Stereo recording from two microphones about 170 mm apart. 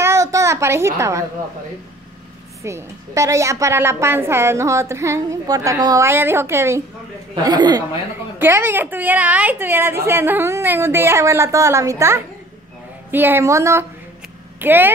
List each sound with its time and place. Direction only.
0.0 s a sound: 15° right (ahead or behind)
2.6 s a woman's voice: 15° right (ahead or behind)
8.4 s a woman's voice: 10° right (ahead or behind)